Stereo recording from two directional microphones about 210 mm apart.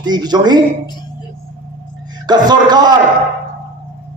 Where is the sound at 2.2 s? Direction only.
20° right (ahead or behind).